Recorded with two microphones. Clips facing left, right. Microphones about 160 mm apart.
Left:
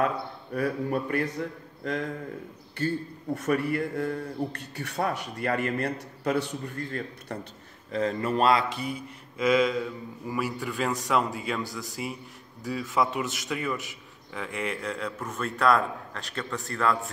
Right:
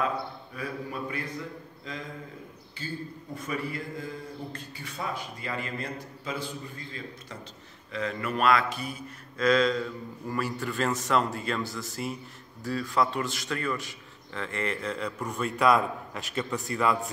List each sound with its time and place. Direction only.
0.6 s speech: 55° left (ahead or behind)
1.8 s a man's voice: 65° left (ahead or behind)
7.9 s speech: 35° left (ahead or behind)
9.4 s a man's voice: 10° left (ahead or behind)
13.1 s a man's voice: 20° left (ahead or behind); by 16.9 s centre (ahead or behind)